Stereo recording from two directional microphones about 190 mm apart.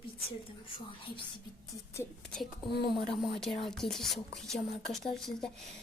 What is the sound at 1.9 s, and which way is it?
Speech, 5° left (ahead or behind).